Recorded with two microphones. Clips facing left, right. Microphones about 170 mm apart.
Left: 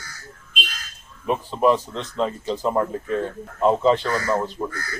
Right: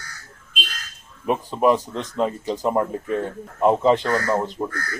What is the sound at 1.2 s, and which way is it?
Speech, 15° right (ahead or behind).